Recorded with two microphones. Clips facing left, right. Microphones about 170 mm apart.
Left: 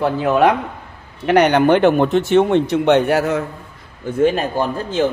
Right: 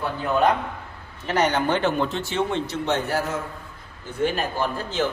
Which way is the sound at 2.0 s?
20° left (ahead or behind).